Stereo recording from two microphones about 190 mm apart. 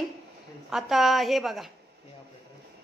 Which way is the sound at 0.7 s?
Centre (ahead or behind).